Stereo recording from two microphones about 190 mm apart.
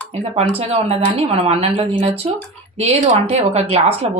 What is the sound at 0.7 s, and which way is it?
A woman's voice, 30° right (ahead or behind).